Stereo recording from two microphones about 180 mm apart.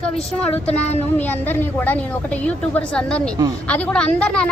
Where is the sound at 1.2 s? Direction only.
10° left (ahead or behind).